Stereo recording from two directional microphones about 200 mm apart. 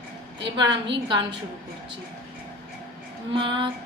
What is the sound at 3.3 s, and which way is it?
Speech, 25° right (ahead or behind).